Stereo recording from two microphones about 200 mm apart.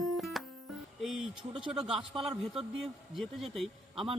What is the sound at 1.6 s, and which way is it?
A man's voice, 5° right (ahead or behind).